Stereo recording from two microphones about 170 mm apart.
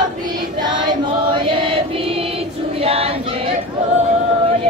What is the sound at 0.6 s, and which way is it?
Choir, 25° right (ahead or behind).